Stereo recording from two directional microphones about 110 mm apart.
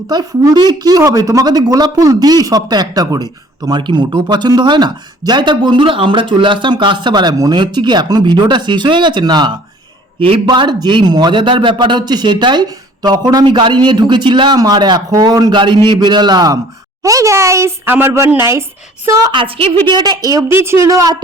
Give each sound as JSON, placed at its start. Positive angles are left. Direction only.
{"t": 0.1, "sound": "speech", "side_deg": -40}
{"t": 10.2, "sound": "a man's voice", "side_deg": -60}
{"t": 10.4, "sound": "a woman's voice", "side_deg": -40}
{"t": 19.3, "sound": "a woman's voice", "side_deg": -50}
{"t": 19.8, "sound": "speech", "side_deg": -40}
{"t": 20.5, "sound": "a woman's voice", "side_deg": -25}